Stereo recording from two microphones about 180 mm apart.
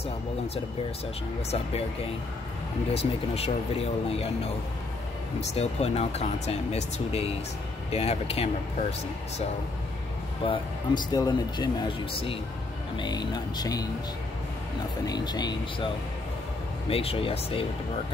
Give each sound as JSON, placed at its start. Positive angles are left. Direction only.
{"t": 2.9, "sound": "speech", "side_deg": 35}
{"t": 5.5, "sound": "speech", "side_deg": 35}
{"t": 10.4, "sound": "speech", "side_deg": 25}
{"t": 12.9, "sound": "speech", "side_deg": 25}
{"t": 15.0, "sound": "speech", "side_deg": 20}
{"t": 16.9, "sound": "speech", "side_deg": 30}